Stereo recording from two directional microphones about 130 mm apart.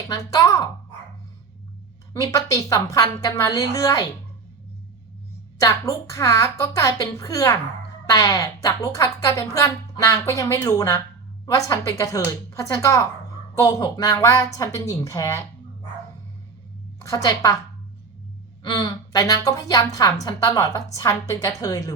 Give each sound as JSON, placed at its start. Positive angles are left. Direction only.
{"t": 0.1, "sound": "a woman's voice", "side_deg": 25}
{"t": 2.2, "sound": "a woman's voice", "side_deg": 25}
{"t": 5.5, "sound": "a woman's voice", "side_deg": 25}
{"t": 17.0, "sound": "a woman's voice", "side_deg": 25}
{"t": 18.6, "sound": "a woman's voice", "side_deg": 30}